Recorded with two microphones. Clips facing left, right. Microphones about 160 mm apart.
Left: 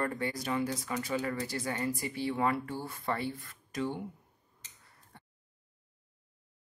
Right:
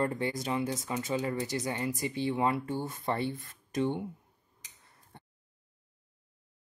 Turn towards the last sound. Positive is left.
turn(degrees=-25)  # may be behind; listen again after turning